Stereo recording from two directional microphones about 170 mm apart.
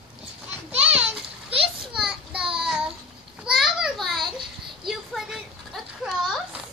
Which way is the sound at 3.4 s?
5° right (ahead or behind).